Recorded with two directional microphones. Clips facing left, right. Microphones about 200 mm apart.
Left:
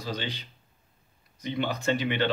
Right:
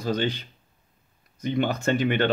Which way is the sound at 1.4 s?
50° right (ahead or behind).